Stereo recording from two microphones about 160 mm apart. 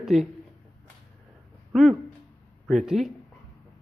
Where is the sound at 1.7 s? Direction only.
Centre (ahead or behind).